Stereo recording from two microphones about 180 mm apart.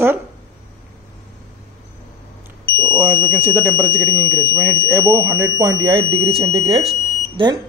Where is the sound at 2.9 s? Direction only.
10° right (ahead or behind); by 6.9 s 30° right (ahead or behind).